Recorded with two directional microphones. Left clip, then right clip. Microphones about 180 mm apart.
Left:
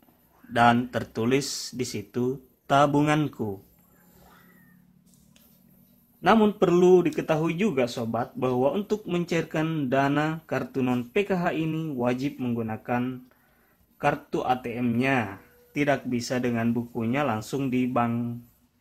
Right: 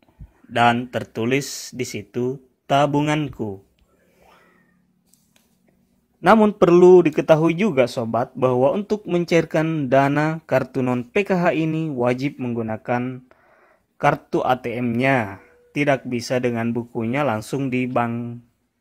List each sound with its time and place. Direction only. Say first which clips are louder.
0.5 s speech: right 3 dB; 20° right (ahead or behind)
6.6 s speech: right 10 dB; 35° right (ahead or behind)